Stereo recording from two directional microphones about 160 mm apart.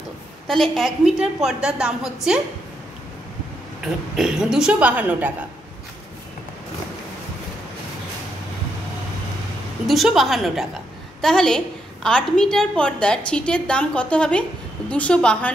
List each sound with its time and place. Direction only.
0.5 s a woman's voice: centre (ahead or behind)
3.8 s a woman's voice: 5° right (ahead or behind)
9.8 s a woman's voice: centre (ahead or behind)